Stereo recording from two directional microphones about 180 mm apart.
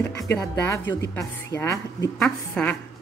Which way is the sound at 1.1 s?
15° left (ahead or behind).